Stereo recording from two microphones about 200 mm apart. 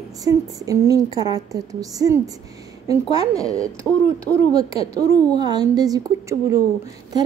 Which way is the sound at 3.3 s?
5° left (ahead or behind).